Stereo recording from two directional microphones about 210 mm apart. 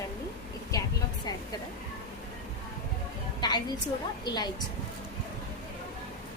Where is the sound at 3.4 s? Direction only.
20° left (ahead or behind).